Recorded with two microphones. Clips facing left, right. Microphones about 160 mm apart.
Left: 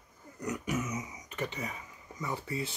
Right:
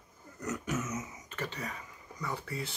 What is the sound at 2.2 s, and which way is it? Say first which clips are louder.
Speech: left 2 dB; 20° left (ahead or behind).